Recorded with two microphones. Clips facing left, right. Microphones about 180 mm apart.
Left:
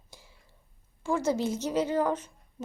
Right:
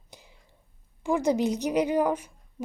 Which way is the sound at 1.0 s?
15° right (ahead or behind).